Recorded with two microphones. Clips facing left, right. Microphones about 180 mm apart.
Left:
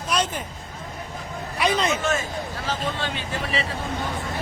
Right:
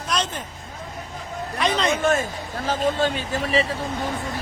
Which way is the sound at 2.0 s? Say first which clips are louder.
Right 4 dB; 50° right (ahead or behind).